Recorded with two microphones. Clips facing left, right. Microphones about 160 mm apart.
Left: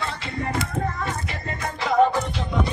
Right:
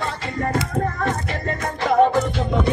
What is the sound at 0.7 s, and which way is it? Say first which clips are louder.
Child singing: right 4 dB; 50° right (ahead or behind).